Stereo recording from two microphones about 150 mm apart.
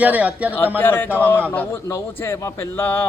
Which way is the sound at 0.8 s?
15° left (ahead or behind).